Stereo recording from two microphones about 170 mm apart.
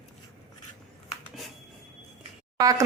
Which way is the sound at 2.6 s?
20° right (ahead or behind).